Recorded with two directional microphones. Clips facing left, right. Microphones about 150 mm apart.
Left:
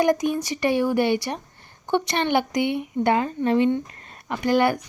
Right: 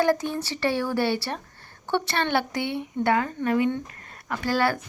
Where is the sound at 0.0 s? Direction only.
15° left (ahead or behind).